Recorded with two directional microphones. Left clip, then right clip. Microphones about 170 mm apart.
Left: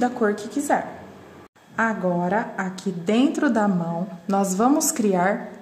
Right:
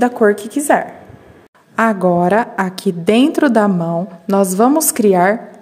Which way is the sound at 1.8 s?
75° right (ahead or behind).